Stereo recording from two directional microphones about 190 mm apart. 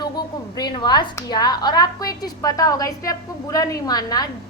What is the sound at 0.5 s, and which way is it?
A woman's voice, 25° left (ahead or behind).